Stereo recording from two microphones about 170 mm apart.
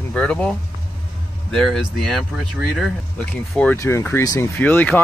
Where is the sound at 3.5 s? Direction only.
5° left (ahead or behind).